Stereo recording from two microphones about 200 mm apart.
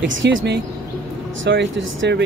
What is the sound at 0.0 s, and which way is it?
Speech, 70° right (ahead or behind).